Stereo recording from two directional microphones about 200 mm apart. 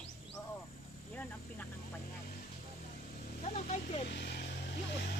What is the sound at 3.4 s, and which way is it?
Speech, 30° left (ahead or behind).